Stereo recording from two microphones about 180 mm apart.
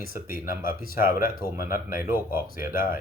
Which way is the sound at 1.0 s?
15° right (ahead or behind).